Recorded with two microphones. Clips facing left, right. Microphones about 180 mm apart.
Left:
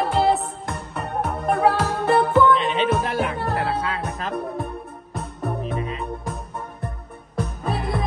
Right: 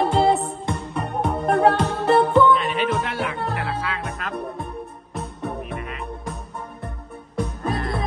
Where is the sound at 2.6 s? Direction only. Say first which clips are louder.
Left 2 dB; 25° left (ahead or behind).